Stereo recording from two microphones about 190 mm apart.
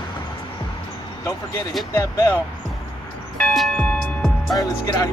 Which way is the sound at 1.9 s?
15° left (ahead or behind).